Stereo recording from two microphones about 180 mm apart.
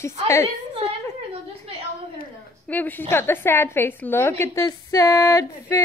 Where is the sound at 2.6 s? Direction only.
10° left (ahead or behind).